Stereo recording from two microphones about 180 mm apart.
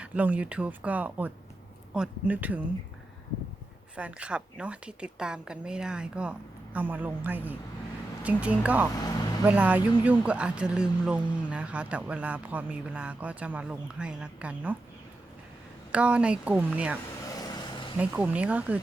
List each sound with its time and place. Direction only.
0.0 s speech: 10° right (ahead or behind)
3.9 s a woman's voice: 5° right (ahead or behind)
9.0 s speech: 20° left (ahead or behind)
9.5 s speech: 10° right (ahead or behind)
15.9 s speech: 5° right (ahead or behind)
17.2 s vehicle: 20° left (ahead or behind)
17.9 s speech: 10° right (ahead or behind)